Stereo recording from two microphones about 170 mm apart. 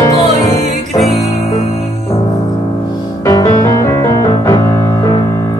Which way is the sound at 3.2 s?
20° left (ahead or behind).